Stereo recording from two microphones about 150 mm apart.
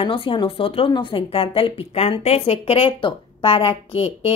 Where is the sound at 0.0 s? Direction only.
35° left (ahead or behind).